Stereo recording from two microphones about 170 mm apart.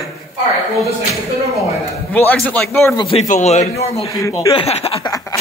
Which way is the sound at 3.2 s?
45° left (ahead or behind).